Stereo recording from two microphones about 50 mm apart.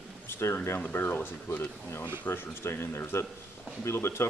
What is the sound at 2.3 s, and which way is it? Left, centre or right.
Speech, left.